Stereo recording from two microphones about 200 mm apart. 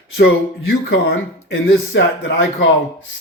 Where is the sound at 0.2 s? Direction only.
60° left (ahead or behind).